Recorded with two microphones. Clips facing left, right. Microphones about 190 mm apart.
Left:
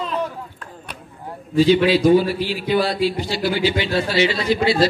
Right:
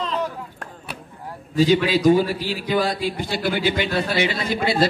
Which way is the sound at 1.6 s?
45° right (ahead or behind).